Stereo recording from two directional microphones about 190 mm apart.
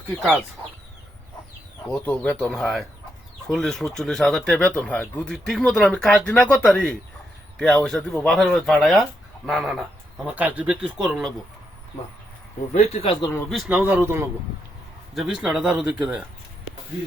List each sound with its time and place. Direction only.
0.2 s speech: centre (ahead or behind)
1.9 s speech: 5° left (ahead or behind)
12.7 s speech: 35° left (ahead or behind)
13.5 s speech: 5° right (ahead or behind)